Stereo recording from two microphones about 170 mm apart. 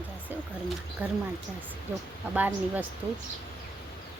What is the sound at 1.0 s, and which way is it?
Speech, 10° right (ahead or behind).